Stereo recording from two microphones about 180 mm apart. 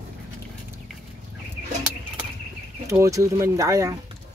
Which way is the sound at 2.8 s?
15° right (ahead or behind).